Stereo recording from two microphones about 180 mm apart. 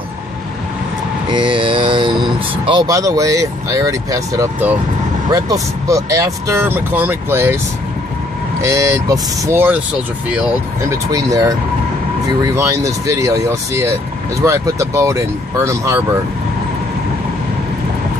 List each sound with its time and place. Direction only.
1.3 s speech: 25° right (ahead or behind)
8.6 s speech: 15° right (ahead or behind)
11.1 s speech: 20° right (ahead or behind)
12.5 s speech: 15° right (ahead or behind)